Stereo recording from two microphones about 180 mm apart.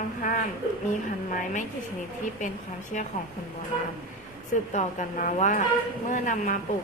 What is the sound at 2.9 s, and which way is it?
Speech, 45° left (ahead or behind).